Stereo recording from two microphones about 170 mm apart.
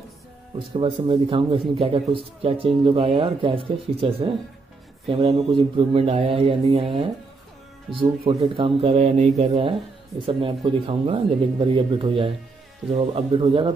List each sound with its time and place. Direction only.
0.7 s speech: 30° right (ahead or behind)
7.9 s speech: centre (ahead or behind)
8.3 s speech: 35° right (ahead or behind)
10.2 s speech: 30° right (ahead or behind)